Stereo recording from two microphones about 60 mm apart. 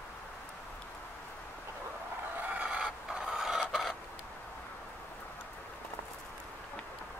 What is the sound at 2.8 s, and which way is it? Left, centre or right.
Printer, centre.